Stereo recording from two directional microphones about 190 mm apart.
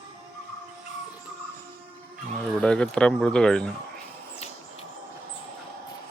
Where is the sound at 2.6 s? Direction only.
5° left (ahead or behind).